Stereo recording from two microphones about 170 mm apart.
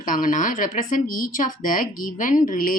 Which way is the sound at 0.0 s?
55° left (ahead or behind).